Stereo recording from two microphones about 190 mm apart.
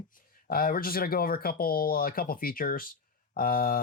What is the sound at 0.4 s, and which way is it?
Speech, 50° left (ahead or behind).